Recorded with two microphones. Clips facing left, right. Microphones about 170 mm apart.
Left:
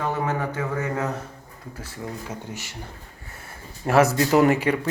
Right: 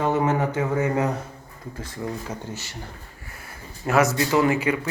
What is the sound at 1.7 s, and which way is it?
Speech, 10° left (ahead or behind).